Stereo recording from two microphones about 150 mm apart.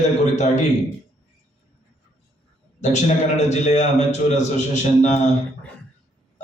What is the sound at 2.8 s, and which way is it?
A man's voice, 50° left (ahead or behind).